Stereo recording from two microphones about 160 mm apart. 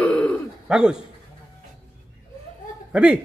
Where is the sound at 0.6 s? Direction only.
5° right (ahead or behind).